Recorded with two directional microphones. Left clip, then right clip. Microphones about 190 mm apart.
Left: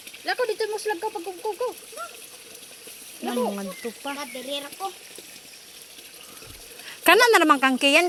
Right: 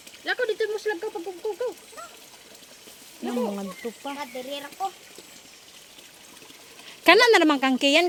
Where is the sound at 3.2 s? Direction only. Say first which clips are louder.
Left 2 dB; 15° right (ahead or behind).